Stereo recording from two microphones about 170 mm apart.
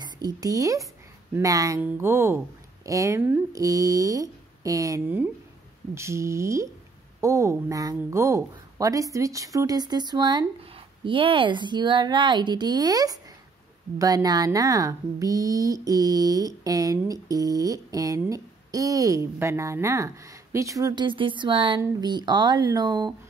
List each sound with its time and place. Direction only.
0.0 s speech: 25° right (ahead or behind)